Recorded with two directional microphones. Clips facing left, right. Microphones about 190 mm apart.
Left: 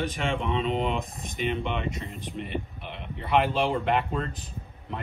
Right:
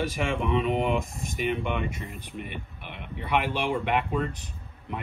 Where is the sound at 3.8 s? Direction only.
5° right (ahead or behind).